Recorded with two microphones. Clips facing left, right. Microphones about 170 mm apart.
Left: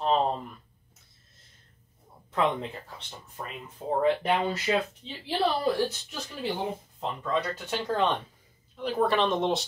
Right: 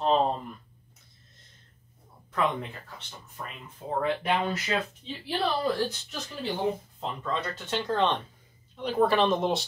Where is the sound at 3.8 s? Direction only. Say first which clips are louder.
Left 4 dB; 30° left (ahead or behind).